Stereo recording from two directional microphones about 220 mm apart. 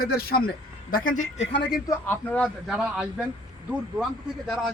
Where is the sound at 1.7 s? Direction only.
10° left (ahead or behind).